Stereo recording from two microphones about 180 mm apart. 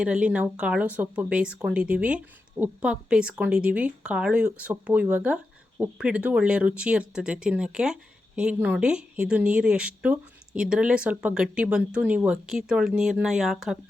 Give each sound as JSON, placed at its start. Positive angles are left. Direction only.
{"t": 0.0, "sound": "a woman's voice", "side_deg": -5}